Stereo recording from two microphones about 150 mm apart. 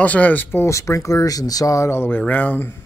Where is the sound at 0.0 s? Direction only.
10° left (ahead or behind).